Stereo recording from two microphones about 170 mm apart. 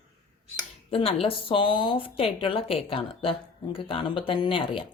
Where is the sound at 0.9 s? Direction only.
35° left (ahead or behind).